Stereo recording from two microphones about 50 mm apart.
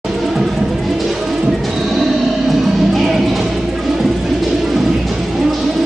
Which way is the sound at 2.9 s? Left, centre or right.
Centre.